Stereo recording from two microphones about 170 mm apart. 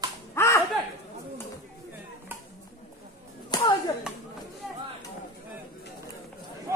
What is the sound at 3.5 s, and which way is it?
Clapping, 25° left (ahead or behind).